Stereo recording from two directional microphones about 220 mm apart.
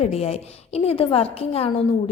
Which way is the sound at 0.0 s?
30° left (ahead or behind).